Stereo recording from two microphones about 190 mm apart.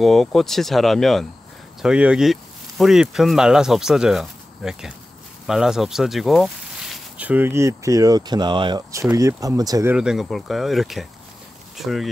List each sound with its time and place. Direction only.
0.0 s speech: centre (ahead or behind); by 9.9 s 20° right (ahead or behind)
9.9 s speech: 5° right (ahead or behind)